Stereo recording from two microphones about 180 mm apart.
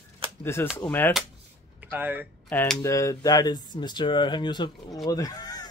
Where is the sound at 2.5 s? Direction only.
10° left (ahead or behind).